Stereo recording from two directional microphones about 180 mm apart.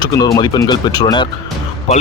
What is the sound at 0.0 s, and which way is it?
Speech, 20° left (ahead or behind).